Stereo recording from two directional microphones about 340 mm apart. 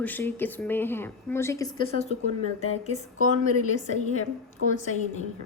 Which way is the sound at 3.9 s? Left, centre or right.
Left.